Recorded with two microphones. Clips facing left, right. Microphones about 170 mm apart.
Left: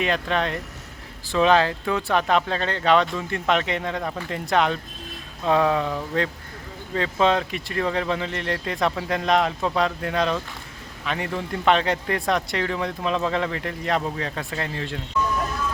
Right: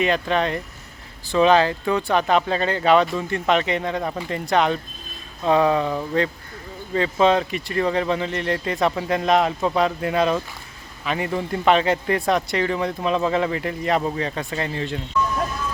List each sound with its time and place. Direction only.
0.0 s speech: centre (ahead or behind)